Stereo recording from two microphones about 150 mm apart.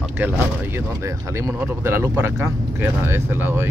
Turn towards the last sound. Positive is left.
turn(degrees=-15)  # may be behind; listen again after turning